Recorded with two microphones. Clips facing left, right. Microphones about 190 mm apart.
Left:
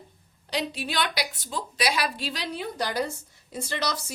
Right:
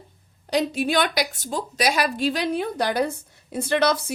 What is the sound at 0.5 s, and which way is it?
A woman's voice, 45° right (ahead or behind).